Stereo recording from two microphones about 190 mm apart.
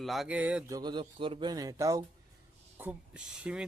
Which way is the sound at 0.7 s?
25° right (ahead or behind).